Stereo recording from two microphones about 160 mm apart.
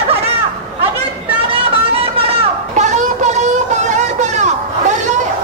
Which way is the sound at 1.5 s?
35° right (ahead or behind).